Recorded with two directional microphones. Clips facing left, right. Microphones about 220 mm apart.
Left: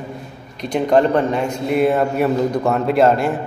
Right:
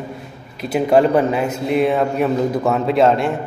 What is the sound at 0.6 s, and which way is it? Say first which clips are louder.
Speech: right 1 dB; 5° right (ahead or behind).